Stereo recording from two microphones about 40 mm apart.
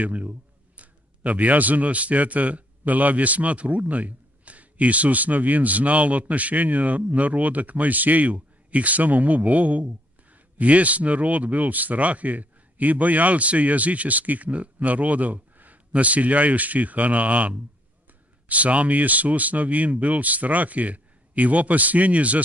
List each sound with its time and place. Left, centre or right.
0.0 s a man's voice: right